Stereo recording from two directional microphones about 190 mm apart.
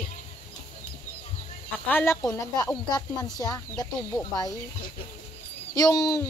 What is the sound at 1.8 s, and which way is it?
Speech, 10° left (ahead or behind).